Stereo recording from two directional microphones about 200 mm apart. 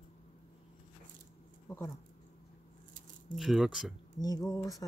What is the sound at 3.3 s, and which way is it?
Speech, centre (ahead or behind).